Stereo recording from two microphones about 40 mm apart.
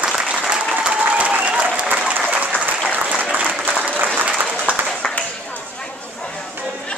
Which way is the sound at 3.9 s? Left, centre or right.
Right.